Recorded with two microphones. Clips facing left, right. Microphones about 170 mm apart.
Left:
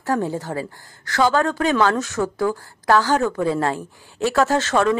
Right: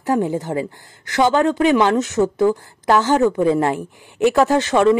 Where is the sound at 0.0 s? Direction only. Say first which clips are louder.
Right 3 dB; 20° right (ahead or behind).